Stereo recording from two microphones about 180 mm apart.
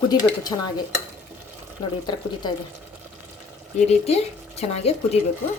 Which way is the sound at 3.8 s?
35° left (ahead or behind).